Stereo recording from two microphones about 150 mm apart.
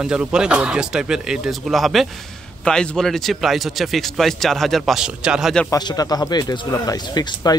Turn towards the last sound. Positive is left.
turn(degrees=25)  # may be behind; listen again after turning